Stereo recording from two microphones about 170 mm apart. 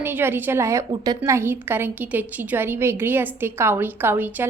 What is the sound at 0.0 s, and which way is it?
A woman's voice, 15° right (ahead or behind).